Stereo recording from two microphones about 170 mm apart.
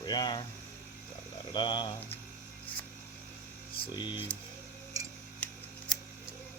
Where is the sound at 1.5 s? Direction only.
25° left (ahead or behind).